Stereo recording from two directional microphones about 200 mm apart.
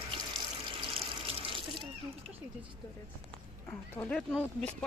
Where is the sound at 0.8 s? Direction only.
25° right (ahead or behind).